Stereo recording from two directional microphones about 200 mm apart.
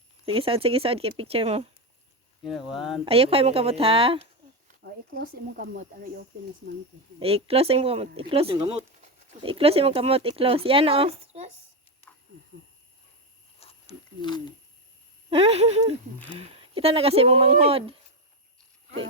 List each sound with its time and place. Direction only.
0.3 s speech: 30° right (ahead or behind)
2.4 s speech: centre (ahead or behind)
3.0 s speech: 30° right (ahead or behind)
4.8 s speech: 45° right (ahead or behind)
7.2 s speech: 30° right (ahead or behind)
13.6 s a sound: 30° left (ahead or behind)
15.3 s a sound: 30° right (ahead or behind)
16.3 s speech: 30° right (ahead or behind)